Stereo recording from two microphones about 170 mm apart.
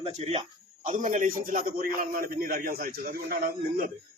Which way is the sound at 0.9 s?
45° right (ahead or behind).